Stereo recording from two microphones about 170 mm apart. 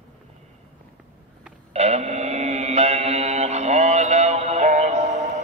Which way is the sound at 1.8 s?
40° right (ahead or behind).